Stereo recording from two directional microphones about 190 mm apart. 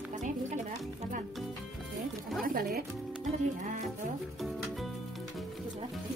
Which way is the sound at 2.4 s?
50° right (ahead or behind).